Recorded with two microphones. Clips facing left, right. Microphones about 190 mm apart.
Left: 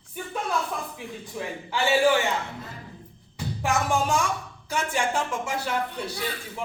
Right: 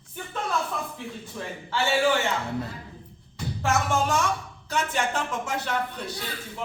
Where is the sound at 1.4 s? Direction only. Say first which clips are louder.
Left 3 dB; 15° left (ahead or behind).